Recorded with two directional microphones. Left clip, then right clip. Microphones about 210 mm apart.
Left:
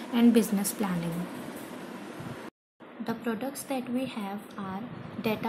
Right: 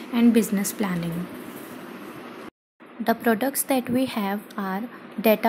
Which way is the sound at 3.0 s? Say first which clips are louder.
Right 11 dB; 30° right (ahead or behind).